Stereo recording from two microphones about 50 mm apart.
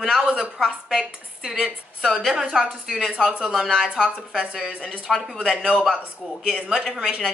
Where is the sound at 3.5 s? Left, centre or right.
Centre.